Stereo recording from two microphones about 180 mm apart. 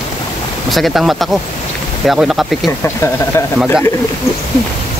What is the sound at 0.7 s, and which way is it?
Speech, centre (ahead or behind).